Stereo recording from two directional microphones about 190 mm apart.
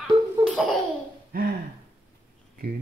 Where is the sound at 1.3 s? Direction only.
50° right (ahead or behind).